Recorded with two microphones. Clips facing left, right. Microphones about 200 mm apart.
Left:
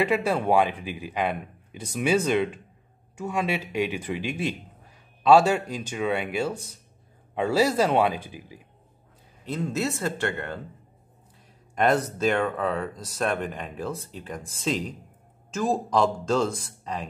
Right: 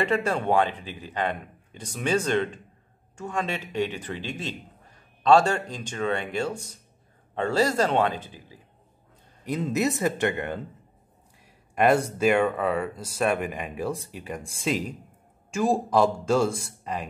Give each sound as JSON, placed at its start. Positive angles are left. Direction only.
{"t": 0.0, "sound": "speech", "side_deg": 5}
{"t": 9.4, "sound": "speech", "side_deg": -15}
{"t": 11.7, "sound": "speech", "side_deg": -10}